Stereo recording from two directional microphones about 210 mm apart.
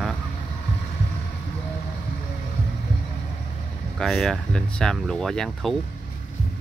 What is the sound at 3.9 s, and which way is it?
Speech, centre (ahead or behind).